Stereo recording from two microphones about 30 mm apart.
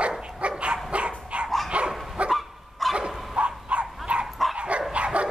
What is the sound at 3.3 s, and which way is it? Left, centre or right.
Dog, right.